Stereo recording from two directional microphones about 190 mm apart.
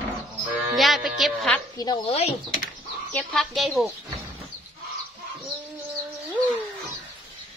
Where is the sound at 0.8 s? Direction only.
Centre (ahead or behind).